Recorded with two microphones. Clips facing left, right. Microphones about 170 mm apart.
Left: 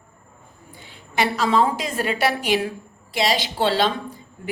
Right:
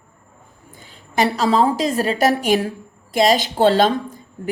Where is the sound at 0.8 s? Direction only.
40° right (ahead or behind).